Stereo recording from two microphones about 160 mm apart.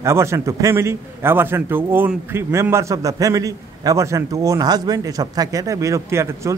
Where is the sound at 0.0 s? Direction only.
15° right (ahead or behind).